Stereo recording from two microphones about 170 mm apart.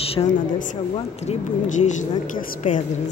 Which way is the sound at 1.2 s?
45° left (ahead or behind).